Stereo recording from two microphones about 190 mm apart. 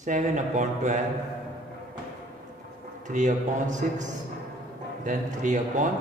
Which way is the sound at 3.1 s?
40° right (ahead or behind).